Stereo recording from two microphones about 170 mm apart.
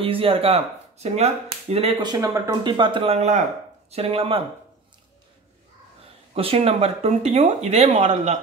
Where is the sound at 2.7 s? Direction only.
30° right (ahead or behind).